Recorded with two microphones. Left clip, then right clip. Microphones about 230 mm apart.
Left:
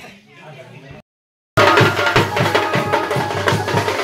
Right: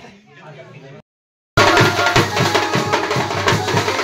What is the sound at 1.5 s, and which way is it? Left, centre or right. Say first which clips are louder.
Music: even; right.